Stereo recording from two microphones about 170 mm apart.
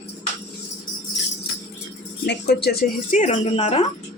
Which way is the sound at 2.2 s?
75° left (ahead or behind).